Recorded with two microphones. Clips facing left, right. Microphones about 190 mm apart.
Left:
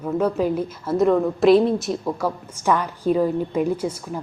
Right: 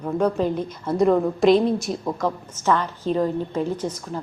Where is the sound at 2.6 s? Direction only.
10° left (ahead or behind).